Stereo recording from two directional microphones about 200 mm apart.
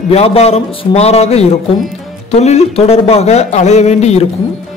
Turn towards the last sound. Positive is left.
turn(degrees=30)  # may be behind; listen again after turning